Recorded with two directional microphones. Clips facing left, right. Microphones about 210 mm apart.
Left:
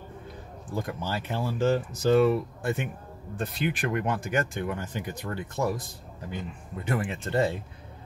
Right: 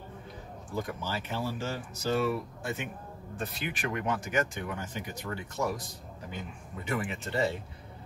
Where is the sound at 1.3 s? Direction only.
55° left (ahead or behind).